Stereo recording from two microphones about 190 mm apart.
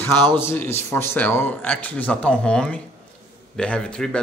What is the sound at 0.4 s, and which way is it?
Speech, 15° left (ahead or behind).